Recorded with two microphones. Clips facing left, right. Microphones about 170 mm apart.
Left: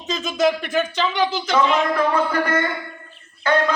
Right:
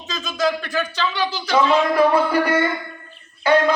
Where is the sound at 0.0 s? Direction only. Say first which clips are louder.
Left 3 dB; 20° left (ahead or behind).